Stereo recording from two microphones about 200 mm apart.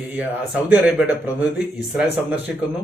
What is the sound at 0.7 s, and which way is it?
A man's voice, 5° right (ahead or behind).